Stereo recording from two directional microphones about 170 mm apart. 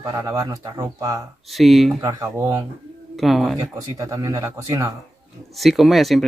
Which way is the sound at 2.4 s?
15° right (ahead or behind).